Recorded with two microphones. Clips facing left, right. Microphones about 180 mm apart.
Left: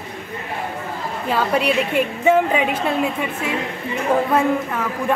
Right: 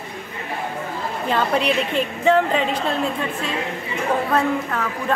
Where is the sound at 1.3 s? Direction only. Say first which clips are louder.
Left 1 dB; 5° left (ahead or behind).